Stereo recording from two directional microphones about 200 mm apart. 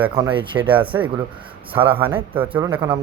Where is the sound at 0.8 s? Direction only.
10° right (ahead or behind).